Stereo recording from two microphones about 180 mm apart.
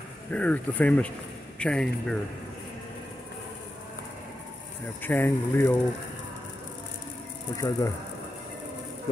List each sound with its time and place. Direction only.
0.3 s speech: 10° left (ahead or behind)
5.0 s speech: 10° left (ahead or behind)
7.5 s speech: 20° left (ahead or behind)